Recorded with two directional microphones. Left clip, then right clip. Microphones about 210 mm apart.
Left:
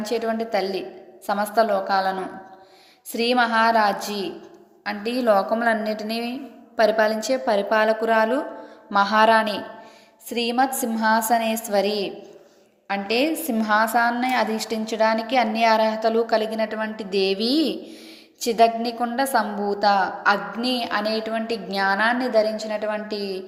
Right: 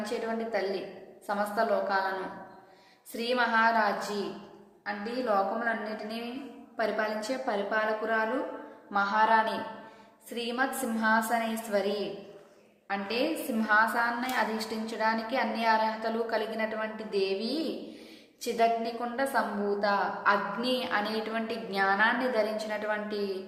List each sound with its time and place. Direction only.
0.0 s a woman's voice: 30° left (ahead or behind)